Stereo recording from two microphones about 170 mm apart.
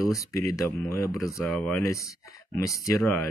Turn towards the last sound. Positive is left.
turn(degrees=20)  # may be behind; listen again after turning